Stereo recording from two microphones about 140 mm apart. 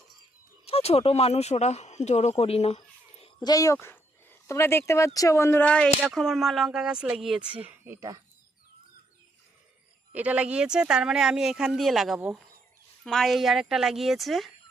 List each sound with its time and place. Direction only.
0.6 s speech: 45° left (ahead or behind)
3.4 s speech: 25° left (ahead or behind); by 7.9 s 10° right (ahead or behind)
10.1 s speech: 10° right (ahead or behind)